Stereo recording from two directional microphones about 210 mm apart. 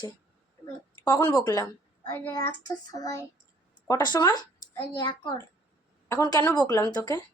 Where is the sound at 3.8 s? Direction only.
20° left (ahead or behind).